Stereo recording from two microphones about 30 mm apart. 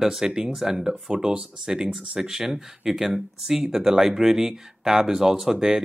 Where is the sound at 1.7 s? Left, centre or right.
Centre.